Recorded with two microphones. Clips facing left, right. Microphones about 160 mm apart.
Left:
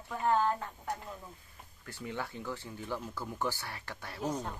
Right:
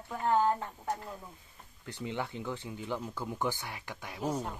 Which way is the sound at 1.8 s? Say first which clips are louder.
Right 3 dB; 20° right (ahead or behind).